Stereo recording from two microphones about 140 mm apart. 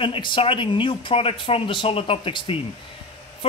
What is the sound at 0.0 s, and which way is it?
A man's voice, 35° left (ahead or behind).